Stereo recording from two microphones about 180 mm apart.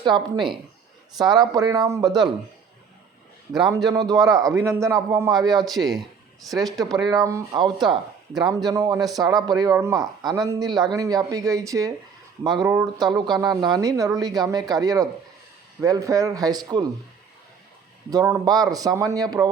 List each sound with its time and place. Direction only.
0.0 s speech: 25° right (ahead or behind)
3.8 s a man's voice: 20° right (ahead or behind)
5.6 s speech: centre (ahead or behind)
6.9 s speech: 20° right (ahead or behind)
18.1 s speech: 20° right (ahead or behind)